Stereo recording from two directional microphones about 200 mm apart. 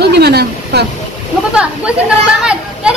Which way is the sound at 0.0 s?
55° right (ahead or behind).